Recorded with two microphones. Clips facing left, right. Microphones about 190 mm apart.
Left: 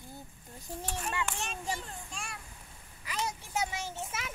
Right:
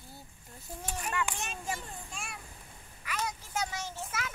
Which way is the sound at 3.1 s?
20° left (ahead or behind).